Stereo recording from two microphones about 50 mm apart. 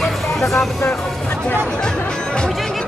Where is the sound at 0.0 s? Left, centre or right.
Centre.